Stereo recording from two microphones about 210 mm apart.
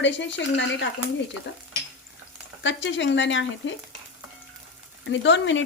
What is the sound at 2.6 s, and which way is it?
Speech, 60° left (ahead or behind).